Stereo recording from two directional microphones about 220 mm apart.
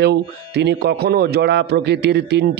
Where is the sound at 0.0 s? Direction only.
50° right (ahead or behind).